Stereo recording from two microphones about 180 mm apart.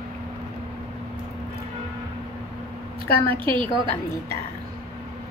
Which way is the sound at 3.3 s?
30° right (ahead or behind).